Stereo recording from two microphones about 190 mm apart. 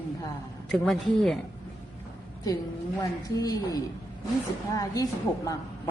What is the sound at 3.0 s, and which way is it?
Speech, 20° left (ahead or behind).